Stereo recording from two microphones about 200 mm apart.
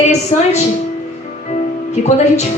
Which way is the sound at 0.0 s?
35° left (ahead or behind).